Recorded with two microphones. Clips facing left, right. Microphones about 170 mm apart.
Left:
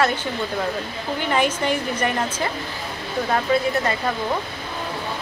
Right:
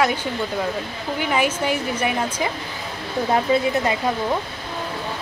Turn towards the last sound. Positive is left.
turn(degrees=-20)  # may be behind; listen again after turning